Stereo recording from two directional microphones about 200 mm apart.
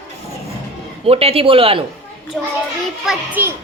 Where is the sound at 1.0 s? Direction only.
30° right (ahead or behind).